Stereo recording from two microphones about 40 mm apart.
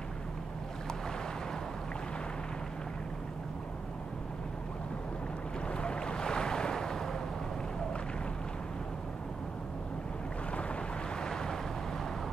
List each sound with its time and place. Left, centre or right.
5.7 s waves: left
11.1 s waves: centre